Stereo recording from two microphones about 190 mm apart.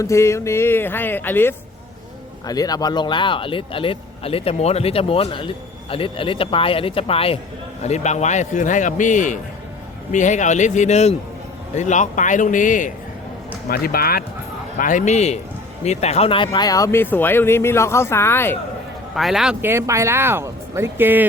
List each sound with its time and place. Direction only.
0.0 s a man's voice: 15° left (ahead or behind)
19.1 s speech: centre (ahead or behind)